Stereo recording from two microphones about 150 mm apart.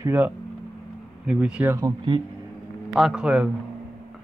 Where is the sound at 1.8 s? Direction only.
25° right (ahead or behind).